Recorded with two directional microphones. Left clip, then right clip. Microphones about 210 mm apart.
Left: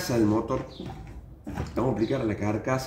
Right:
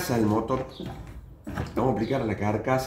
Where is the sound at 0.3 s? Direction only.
15° right (ahead or behind).